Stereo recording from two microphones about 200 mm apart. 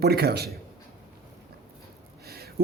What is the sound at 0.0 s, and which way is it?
Speech, 50° right (ahead or behind).